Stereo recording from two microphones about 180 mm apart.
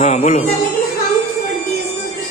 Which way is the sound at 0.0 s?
40° left (ahead or behind).